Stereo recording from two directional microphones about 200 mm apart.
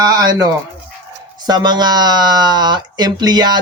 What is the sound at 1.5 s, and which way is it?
Speech, 20° right (ahead or behind).